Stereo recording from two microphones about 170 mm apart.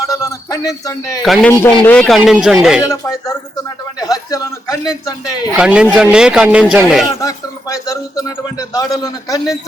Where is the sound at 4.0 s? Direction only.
20° left (ahead or behind).